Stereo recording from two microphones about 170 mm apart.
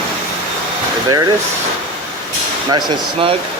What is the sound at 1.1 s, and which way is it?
Speech, 20° right (ahead or behind).